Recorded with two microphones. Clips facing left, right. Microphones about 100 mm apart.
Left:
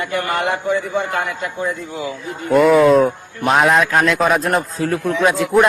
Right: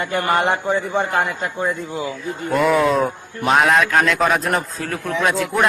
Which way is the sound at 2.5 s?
Centre (ahead or behind).